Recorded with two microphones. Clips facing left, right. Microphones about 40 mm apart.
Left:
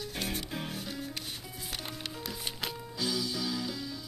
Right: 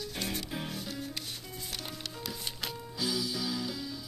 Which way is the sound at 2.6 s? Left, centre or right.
Centre.